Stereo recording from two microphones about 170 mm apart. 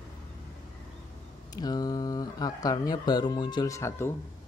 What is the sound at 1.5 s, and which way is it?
Speech, 25° left (ahead or behind).